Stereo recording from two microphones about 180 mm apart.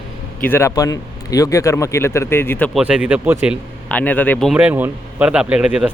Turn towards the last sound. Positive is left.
turn(degrees=-5)  # may be behind; listen again after turning